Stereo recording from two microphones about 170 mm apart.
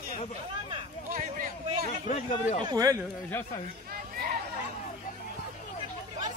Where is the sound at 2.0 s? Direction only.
45° left (ahead or behind).